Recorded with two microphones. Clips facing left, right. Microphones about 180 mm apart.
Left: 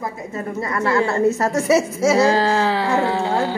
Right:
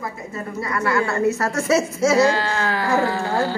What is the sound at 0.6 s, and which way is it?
Speech, 25° left (ahead or behind).